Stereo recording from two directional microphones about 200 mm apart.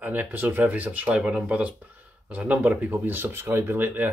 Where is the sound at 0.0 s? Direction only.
10° right (ahead or behind).